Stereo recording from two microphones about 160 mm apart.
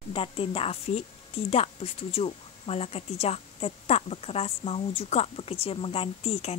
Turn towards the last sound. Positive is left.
turn(degrees=40)  # may be behind; listen again after turning